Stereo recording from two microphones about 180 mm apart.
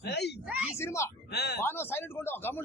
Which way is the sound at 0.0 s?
70° left (ahead or behind).